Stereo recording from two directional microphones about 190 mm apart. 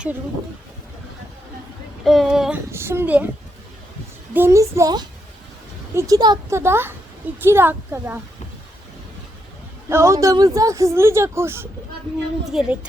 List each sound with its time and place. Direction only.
2.0 s a woman's voice: centre (ahead or behind)
4.4 s a woman's voice: 15° right (ahead or behind)
9.9 s a woman's voice: 15° right (ahead or behind)